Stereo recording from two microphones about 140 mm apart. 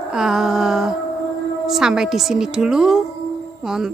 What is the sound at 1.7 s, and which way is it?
Speech, 5° right (ahead or behind).